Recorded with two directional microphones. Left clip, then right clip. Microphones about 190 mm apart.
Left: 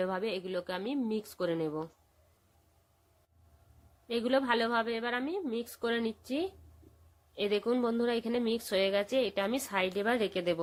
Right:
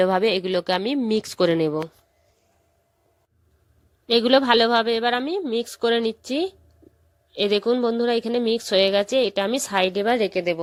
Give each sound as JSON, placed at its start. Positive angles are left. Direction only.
{"t": 0.0, "sound": "a woman's voice", "side_deg": -50}
{"t": 4.0, "sound": "a woman's voice", "side_deg": -50}